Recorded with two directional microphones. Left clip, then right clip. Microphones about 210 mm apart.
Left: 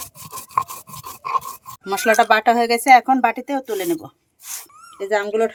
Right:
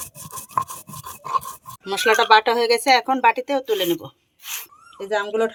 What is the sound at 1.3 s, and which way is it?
Dog, 5° left (ahead or behind).